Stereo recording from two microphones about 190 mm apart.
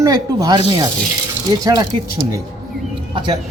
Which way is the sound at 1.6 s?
20° right (ahead or behind).